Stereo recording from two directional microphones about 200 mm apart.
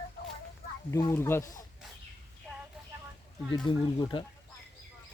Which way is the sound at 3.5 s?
20° left (ahead or behind).